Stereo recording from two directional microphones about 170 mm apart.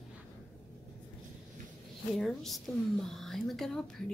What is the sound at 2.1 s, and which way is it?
A woman's voice, centre (ahead or behind).